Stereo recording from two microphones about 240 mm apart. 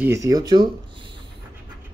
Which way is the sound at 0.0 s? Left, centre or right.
Centre.